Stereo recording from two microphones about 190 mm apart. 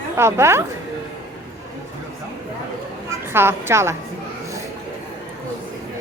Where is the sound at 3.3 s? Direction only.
15° right (ahead or behind).